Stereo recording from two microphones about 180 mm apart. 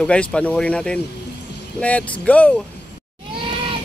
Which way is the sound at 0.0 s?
5° left (ahead or behind).